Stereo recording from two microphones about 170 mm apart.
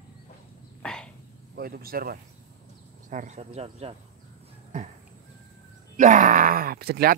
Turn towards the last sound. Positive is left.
turn(degrees=-65)  # may be behind; listen again after turning